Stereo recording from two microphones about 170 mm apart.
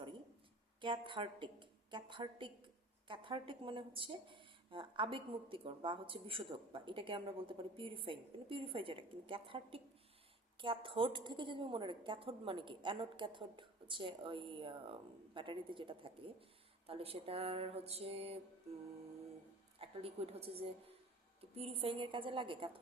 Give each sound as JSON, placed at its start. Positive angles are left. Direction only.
{"t": 0.8, "sound": "a woman's voice", "side_deg": -30}
{"t": 19.8, "sound": "a woman's voice", "side_deg": -35}